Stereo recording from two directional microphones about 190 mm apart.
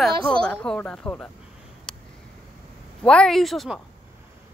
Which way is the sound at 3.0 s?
5° left (ahead or behind).